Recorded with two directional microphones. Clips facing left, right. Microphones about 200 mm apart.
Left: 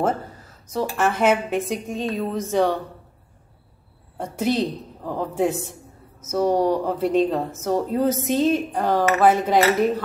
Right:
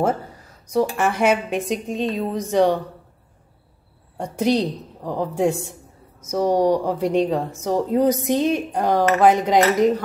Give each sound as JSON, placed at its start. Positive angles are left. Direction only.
{"t": 0.7, "sound": "a woman's voice", "side_deg": -15}
{"t": 4.2, "sound": "a woman's voice", "side_deg": -10}